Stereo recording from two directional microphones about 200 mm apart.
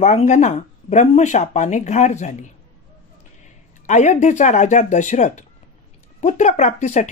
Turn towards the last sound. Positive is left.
turn(degrees=40)  # may be behind; listen again after turning